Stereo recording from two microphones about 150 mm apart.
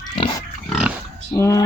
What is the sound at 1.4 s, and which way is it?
Speech, 20° left (ahead or behind).